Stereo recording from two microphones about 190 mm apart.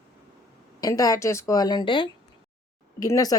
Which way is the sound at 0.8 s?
20° left (ahead or behind).